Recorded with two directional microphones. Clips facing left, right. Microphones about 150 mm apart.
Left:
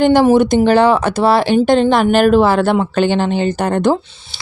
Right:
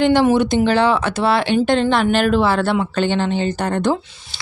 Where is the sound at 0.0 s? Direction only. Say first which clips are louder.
Left 4 dB; 40° left (ahead or behind).